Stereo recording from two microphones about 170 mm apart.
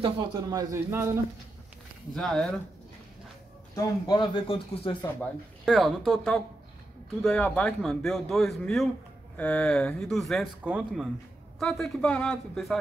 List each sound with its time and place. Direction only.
0.0 s a man's voice: 25° right (ahead or behind)
2.1 s speech: 5° left (ahead or behind)
3.7 s speech: 20° left (ahead or behind)
5.7 s speech: centre (ahead or behind)